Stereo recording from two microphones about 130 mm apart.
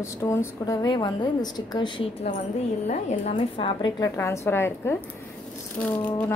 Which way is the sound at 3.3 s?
40° left (ahead or behind).